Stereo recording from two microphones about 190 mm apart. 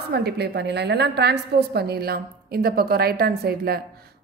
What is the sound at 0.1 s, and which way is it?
A woman's voice, 60° right (ahead or behind).